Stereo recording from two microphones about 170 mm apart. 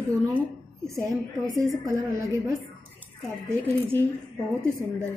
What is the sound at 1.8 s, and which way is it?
Speech, 15° right (ahead or behind).